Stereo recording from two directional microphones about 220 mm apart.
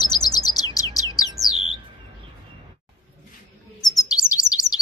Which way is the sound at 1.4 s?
15° right (ahead or behind).